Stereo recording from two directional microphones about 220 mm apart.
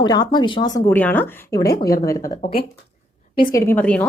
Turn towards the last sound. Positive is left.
turn(degrees=5)  # may be behind; listen again after turning